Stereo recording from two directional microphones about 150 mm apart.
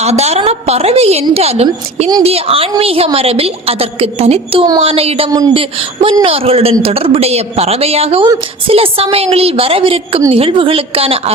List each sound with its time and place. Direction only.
0.0 s a woman's voice: 45° right (ahead or behind)